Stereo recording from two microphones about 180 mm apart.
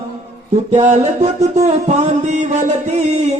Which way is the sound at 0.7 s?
40° right (ahead or behind).